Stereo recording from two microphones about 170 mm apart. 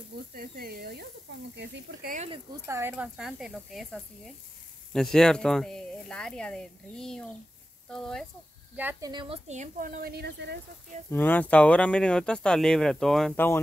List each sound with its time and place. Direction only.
0.3 s speech: 60° right (ahead or behind)
2.6 s speech: 15° right (ahead or behind); by 8.3 s 5° left (ahead or behind)
8.7 s speech: 10° right (ahead or behind)
9.1 s speech: 30° right (ahead or behind)
9.5 s speech: 50° right (ahead or behind); by 10.6 s 70° right (ahead or behind)
11.1 s speech: 10° left (ahead or behind)